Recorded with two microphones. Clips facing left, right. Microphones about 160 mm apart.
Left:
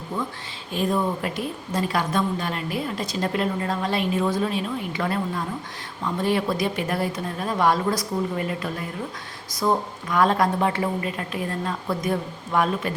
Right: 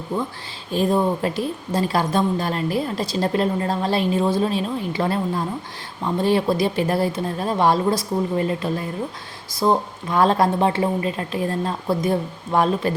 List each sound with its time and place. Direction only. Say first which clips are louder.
0.7 s a woman's voice: right 4 dB; 30° right (ahead or behind)